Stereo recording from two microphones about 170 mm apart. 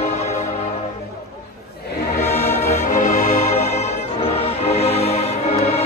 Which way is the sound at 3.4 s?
40° left (ahead or behind).